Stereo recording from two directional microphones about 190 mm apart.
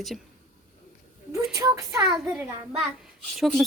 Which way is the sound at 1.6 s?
15° right (ahead or behind).